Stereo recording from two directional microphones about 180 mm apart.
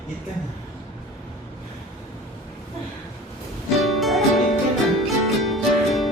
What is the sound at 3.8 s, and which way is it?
Music, centre (ahead or behind).